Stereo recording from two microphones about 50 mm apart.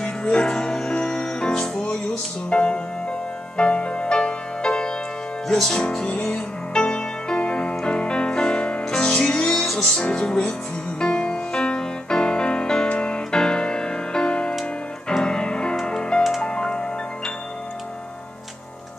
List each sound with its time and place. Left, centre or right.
0.0 s music: centre